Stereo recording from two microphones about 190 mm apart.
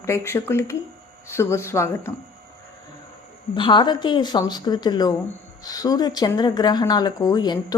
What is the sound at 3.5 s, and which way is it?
Speech, 25° left (ahead or behind).